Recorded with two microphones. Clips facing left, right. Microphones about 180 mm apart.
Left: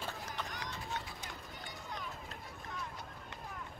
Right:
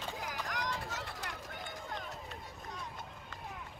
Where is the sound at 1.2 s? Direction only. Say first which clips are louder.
Right 4 dB; 85° right.